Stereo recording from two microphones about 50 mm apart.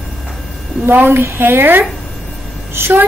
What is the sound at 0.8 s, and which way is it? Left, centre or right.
Speech, right.